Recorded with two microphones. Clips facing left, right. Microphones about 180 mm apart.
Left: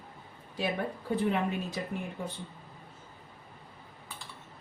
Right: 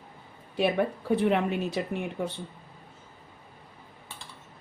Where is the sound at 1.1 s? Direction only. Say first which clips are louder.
Right 4 dB; 70° right (ahead or behind).